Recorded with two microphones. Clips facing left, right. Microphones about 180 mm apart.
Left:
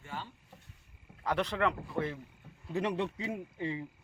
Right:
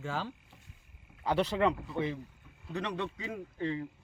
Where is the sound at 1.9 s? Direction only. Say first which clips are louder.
Right 1 dB; centre (ahead or behind).